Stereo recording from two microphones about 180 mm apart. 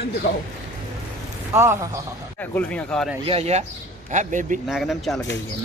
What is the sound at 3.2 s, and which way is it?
A man's voice, 35° right (ahead or behind).